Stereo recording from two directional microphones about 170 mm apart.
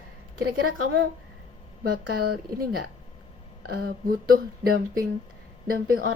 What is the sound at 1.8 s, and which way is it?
Speech, 70° right (ahead or behind).